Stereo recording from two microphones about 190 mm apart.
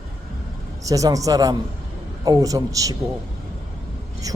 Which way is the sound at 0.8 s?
15° right (ahead or behind).